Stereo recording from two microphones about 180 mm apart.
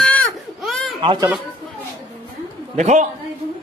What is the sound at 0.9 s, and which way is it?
Speech, 30° right (ahead or behind).